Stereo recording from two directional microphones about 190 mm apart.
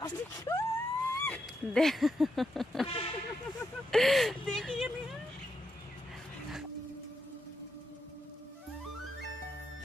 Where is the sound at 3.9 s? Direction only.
Centre (ahead or behind).